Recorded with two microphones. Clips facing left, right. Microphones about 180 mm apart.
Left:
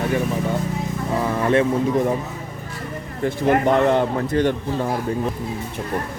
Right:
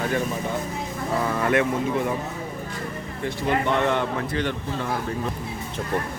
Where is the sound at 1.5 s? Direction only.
30° left (ahead or behind).